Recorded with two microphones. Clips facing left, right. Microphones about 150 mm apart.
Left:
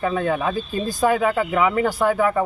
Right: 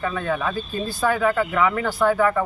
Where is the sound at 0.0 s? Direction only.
25° left (ahead or behind).